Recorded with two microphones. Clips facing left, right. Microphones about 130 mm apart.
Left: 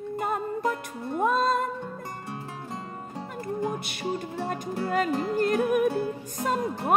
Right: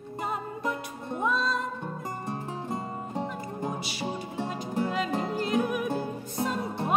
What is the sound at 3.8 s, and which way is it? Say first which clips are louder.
Music: left 2 dB; 55° left (ahead or behind).